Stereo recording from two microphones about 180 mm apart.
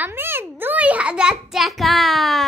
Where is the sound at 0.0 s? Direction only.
10° right (ahead or behind).